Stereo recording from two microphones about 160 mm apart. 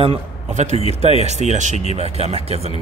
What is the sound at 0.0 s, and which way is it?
A man's voice, 40° right (ahead or behind).